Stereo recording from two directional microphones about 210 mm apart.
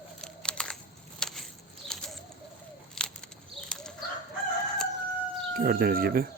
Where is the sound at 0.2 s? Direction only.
5° left (ahead or behind).